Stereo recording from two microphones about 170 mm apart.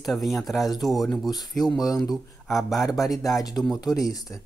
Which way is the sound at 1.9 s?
20° left (ahead or behind).